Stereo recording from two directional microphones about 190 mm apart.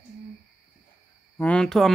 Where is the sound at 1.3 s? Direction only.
5° left (ahead or behind).